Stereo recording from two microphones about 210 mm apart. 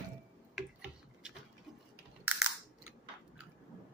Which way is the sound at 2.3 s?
5° right (ahead or behind).